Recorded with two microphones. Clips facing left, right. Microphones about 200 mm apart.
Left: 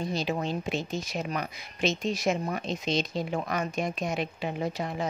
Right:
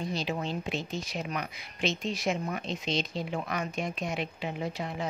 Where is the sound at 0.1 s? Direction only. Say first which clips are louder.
Left 3 dB; 45° left (ahead or behind).